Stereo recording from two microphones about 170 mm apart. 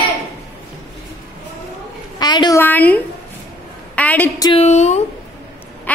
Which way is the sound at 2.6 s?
10° left (ahead or behind).